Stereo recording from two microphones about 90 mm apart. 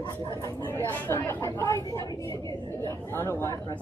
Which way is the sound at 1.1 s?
30° left (ahead or behind).